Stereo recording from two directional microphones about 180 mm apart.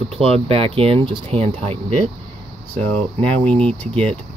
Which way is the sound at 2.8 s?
5° left (ahead or behind).